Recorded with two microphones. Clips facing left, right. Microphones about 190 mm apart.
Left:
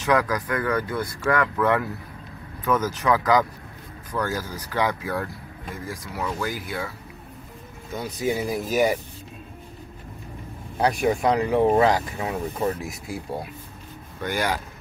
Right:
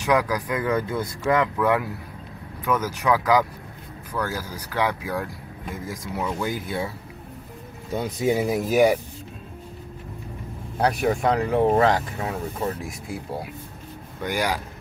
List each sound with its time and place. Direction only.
0.0 s speech: 10° right (ahead or behind)
1.6 s speech: 10° right (ahead or behind)
5.9 s speech: 20° right (ahead or behind)
7.9 s speech: 25° right (ahead or behind)
8.6 s speech: 10° right (ahead or behind)
10.8 s speech: centre (ahead or behind)
11.1 s speech: 10° left (ahead or behind)
12.8 s speech: centre (ahead or behind)
14.2 s speech: 15° right (ahead or behind)